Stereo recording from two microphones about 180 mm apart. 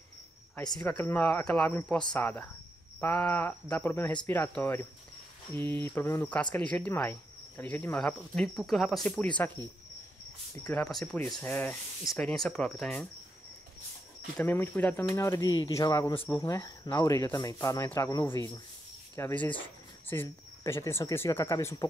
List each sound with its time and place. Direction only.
0.7 s speech: 10° left (ahead or behind)
5.9 s speech: 10° left (ahead or behind)
10.7 s speech: 5° left (ahead or behind)
14.3 s speech: 10° left (ahead or behind)
18.3 s speech: 25° left (ahead or behind)
19.1 s speech: 15° left (ahead or behind)